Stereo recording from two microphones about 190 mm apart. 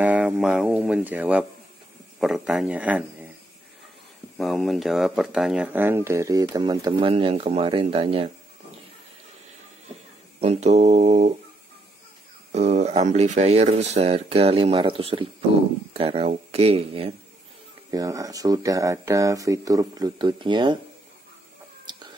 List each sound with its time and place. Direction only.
0.0 s speech: 10° right (ahead or behind)
4.4 s speech: centre (ahead or behind); by 8.3 s 30° right (ahead or behind)
10.4 s speech: 35° right (ahead or behind)
12.5 s speech: 35° right (ahead or behind)
17.9 s speech: 15° right (ahead or behind)
21.9 s chicken: 25° right (ahead or behind)